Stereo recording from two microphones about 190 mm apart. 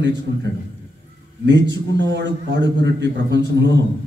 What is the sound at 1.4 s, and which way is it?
A man's voice, 65° right (ahead or behind).